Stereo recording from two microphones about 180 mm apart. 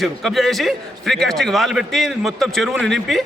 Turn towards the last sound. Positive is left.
turn(degrees=0)  # may be behind; listen again after turning